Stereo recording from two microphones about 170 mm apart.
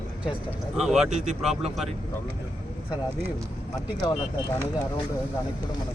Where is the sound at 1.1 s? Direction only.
45° right (ahead or behind).